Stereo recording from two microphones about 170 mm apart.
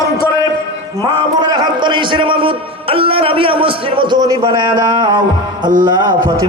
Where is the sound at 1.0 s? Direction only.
25° right (ahead or behind).